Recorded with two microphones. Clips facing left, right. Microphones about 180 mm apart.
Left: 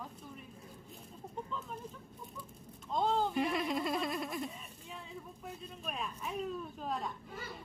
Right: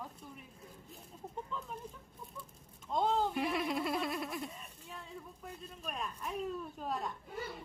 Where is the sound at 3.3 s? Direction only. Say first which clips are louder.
Left 1 dB; 5° right (ahead or behind).